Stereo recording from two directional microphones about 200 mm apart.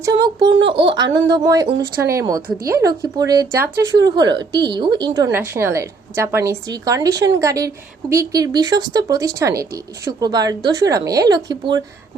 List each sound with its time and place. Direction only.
0.0 s speech: 20° right (ahead or behind)